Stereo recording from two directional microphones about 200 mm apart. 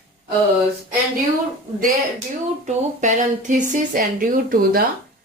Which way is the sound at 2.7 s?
35° right (ahead or behind).